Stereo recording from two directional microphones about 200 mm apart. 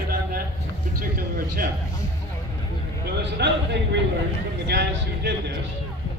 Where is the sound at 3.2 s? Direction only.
60° right (ahead or behind).